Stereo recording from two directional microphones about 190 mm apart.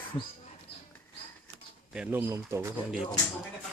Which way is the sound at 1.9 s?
5° right (ahead or behind).